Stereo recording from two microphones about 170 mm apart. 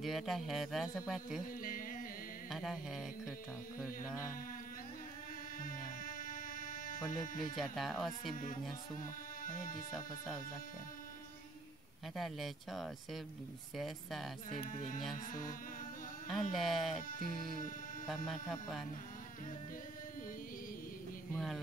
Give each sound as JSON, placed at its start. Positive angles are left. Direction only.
{"t": 0.0, "sound": "speech", "side_deg": 0}
{"t": 1.6, "sound": "music", "side_deg": 55}
{"t": 2.5, "sound": "speech", "side_deg": 0}
{"t": 3.8, "sound": "mantra", "side_deg": 15}
{"t": 5.6, "sound": "music", "side_deg": 55}
{"t": 7.5, "sound": "speech", "side_deg": 0}
{"t": 9.4, "sound": "speech", "side_deg": 55}
{"t": 9.9, "sound": "speech", "side_deg": 0}
{"t": 12.2, "sound": "speech", "side_deg": 0}
{"t": 14.6, "sound": "speech", "side_deg": 50}
{"t": 16.3, "sound": "speech", "side_deg": 0}